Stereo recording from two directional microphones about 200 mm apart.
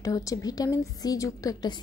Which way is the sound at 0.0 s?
15° left (ahead or behind).